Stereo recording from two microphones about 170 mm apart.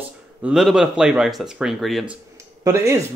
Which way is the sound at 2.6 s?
20° right (ahead or behind).